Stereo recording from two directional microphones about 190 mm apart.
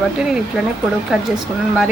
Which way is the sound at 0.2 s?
5° right (ahead or behind).